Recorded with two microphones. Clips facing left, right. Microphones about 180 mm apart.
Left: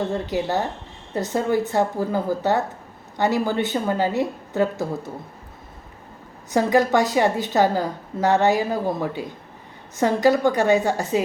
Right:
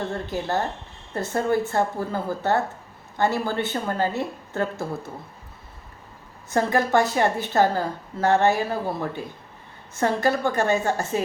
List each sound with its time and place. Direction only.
0.1 s a woman's voice: 15° left (ahead or behind)
6.5 s a woman's voice: 15° left (ahead or behind)